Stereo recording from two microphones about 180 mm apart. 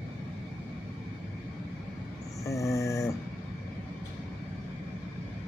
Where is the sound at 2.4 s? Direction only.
15° left (ahead or behind).